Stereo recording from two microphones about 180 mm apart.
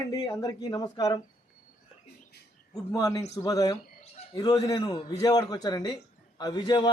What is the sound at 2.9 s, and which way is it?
Speech, 20° left (ahead or behind).